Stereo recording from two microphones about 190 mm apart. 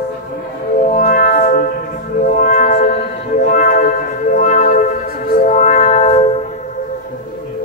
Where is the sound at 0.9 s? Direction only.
40° left (ahead or behind).